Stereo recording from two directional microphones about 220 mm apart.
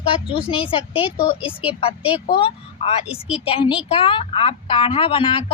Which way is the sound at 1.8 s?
25° left (ahead or behind).